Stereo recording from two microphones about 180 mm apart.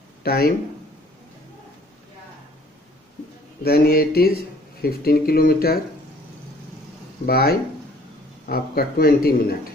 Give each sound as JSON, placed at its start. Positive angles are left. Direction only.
{"t": 0.2, "sound": "speech", "side_deg": 60}
{"t": 3.6, "sound": "speech", "side_deg": 55}
{"t": 7.2, "sound": "speech", "side_deg": 60}